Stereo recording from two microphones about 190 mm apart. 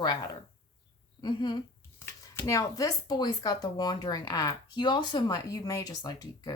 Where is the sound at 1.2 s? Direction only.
25° left (ahead or behind).